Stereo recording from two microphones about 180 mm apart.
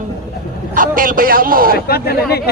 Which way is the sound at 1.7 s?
60° left (ahead or behind).